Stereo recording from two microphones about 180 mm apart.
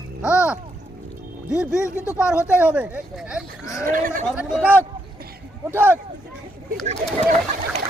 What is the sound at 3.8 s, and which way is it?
Speech, 50° right (ahead or behind).